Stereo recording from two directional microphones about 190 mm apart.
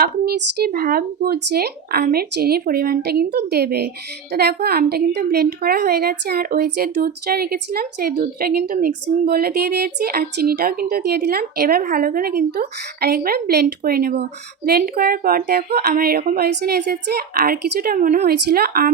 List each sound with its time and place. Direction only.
0.0 s speech: 55° right (ahead or behind)